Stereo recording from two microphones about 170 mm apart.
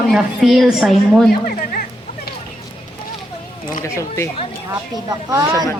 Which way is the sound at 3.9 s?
15° left (ahead or behind).